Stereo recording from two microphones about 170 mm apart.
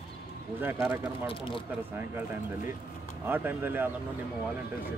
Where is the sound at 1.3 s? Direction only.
30° left (ahead or behind).